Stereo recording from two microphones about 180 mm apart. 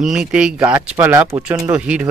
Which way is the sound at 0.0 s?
5° right (ahead or behind).